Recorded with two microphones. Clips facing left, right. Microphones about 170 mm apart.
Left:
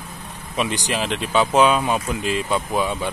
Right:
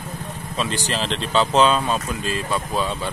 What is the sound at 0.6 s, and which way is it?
Speech, 15° left (ahead or behind).